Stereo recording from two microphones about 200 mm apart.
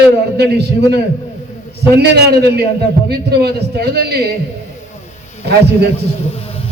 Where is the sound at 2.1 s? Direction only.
55° right (ahead or behind).